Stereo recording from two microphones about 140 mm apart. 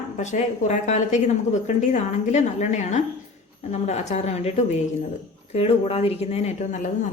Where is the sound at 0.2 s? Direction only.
55° left (ahead or behind).